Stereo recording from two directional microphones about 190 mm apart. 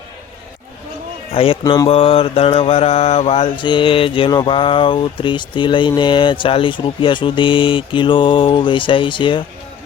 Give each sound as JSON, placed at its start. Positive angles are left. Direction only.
{"t": 1.3, "sound": "mantra", "side_deg": 30}